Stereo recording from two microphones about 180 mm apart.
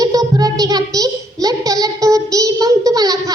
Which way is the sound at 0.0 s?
20° right (ahead or behind).